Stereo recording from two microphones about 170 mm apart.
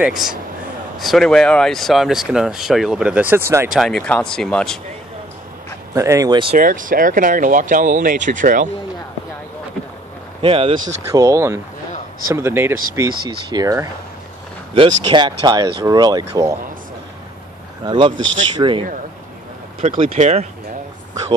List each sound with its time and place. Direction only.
0.0 s speech: 5° right (ahead or behind)
3.6 s speech: centre (ahead or behind)
5.9 s speech: 20° right (ahead or behind)
6.5 s speech: 50° right (ahead or behind)
10.4 s speech: 35° right (ahead or behind)
11.1 s speech: 20° right (ahead or behind)
17.8 s speech: 30° right (ahead or behind)
20.0 s speech: 40° right (ahead or behind)